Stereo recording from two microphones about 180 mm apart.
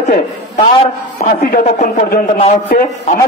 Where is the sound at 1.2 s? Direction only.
50° left (ahead or behind).